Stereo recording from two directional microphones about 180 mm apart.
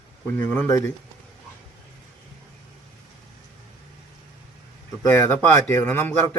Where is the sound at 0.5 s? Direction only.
15° left (ahead or behind).